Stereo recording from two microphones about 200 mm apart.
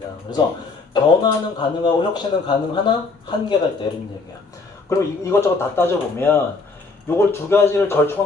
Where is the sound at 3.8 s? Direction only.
20° left (ahead or behind).